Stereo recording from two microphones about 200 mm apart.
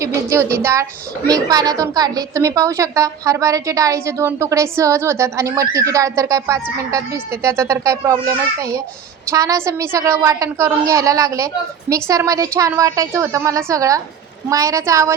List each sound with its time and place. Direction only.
0.0 s a woman's voice: 15° right (ahead or behind)